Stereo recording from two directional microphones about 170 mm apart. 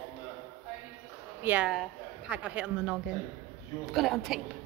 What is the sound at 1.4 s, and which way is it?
A woman's voice, 5° right (ahead or behind).